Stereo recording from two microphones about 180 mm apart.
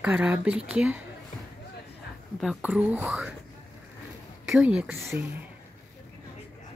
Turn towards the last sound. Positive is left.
turn(degrees=-10)  # may be behind; listen again after turning